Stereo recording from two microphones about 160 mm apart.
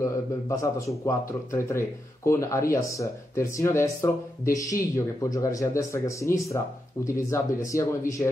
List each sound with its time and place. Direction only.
0.0 s speech: 20° left (ahead or behind)